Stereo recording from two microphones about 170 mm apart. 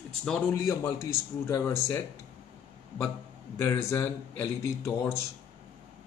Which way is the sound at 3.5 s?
15° left (ahead or behind).